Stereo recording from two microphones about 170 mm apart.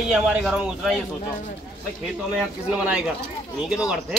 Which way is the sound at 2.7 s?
10° right (ahead or behind).